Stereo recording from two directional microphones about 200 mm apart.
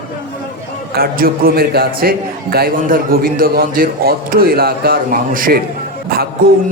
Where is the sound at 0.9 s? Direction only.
45° right (ahead or behind).